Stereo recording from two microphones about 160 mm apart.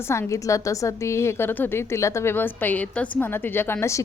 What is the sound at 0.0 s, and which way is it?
Speech, 15° left (ahead or behind).